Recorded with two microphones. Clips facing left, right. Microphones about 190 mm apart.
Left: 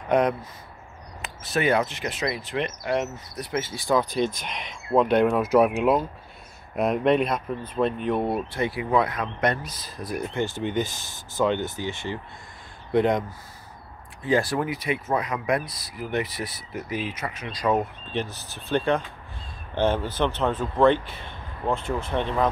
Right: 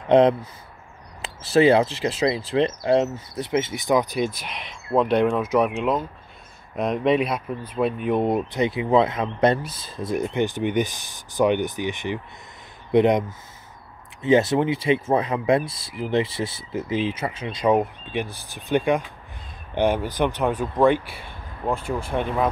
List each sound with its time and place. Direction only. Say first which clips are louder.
0.1 s speech: right 6 dB; 25° right (ahead or behind); by 8.2 s 5° right (ahead or behind)
8.2 s speech: right 4 dB; 20° right (ahead or behind)
14.2 s speech: right 5 dB; 20° right (ahead or behind)